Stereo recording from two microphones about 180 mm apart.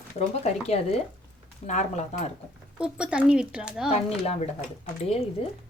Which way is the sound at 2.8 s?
5° right (ahead or behind).